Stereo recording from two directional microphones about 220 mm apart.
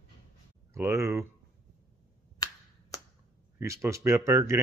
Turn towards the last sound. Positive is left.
turn(degrees=-15)  # may be behind; listen again after turning